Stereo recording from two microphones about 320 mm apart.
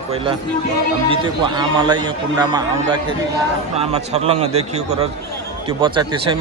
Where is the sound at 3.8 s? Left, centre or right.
Centre.